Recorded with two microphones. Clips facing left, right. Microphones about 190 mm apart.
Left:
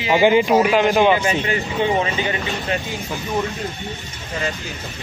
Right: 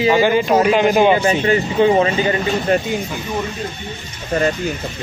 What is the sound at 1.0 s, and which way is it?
Speech, 30° right (ahead or behind).